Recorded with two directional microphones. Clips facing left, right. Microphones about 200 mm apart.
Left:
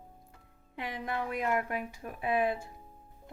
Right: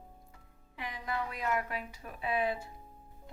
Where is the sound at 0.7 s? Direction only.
55° left (ahead or behind).